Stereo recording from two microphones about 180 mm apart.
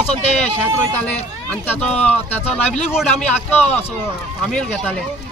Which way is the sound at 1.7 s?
10° left (ahead or behind).